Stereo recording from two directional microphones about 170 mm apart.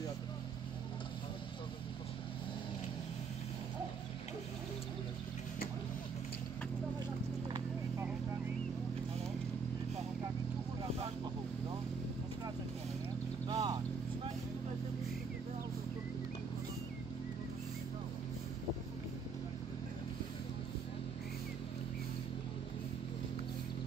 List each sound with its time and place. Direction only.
13.5 s vehicle: 25° right (ahead or behind)